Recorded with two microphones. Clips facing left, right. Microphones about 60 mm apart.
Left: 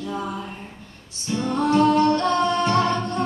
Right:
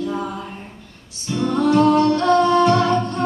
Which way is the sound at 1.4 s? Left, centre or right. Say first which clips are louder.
Right 3 dB; left.